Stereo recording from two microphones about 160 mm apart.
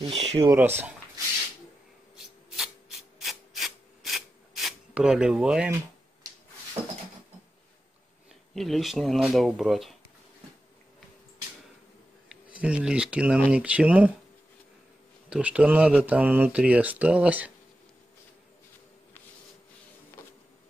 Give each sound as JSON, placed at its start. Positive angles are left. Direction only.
{"t": 0.0, "sound": "speech", "side_deg": -40}
{"t": 0.6, "sound": "speech", "side_deg": -10}
{"t": 2.1, "sound": "rub", "side_deg": 0}
{"t": 6.8, "sound": "a sound", "side_deg": -40}
{"t": 8.5, "sound": "speech", "side_deg": 0}
{"t": 12.3, "sound": "speech", "side_deg": -5}
{"t": 15.2, "sound": "speech", "side_deg": -5}